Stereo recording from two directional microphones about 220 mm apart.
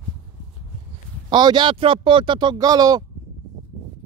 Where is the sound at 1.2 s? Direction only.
20° right (ahead or behind).